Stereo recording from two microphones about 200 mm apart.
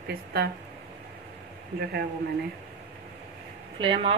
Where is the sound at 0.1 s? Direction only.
50° right (ahead or behind).